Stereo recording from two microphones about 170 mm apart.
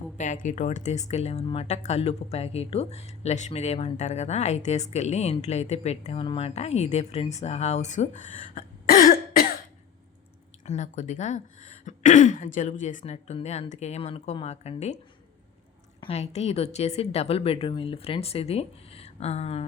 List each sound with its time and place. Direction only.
0.2 s speech: 45° left (ahead or behind)
10.7 s speech: 45° left (ahead or behind)
16.0 s speech: 35° left (ahead or behind)